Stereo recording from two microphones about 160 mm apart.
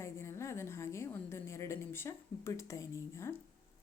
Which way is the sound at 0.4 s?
15° left (ahead or behind).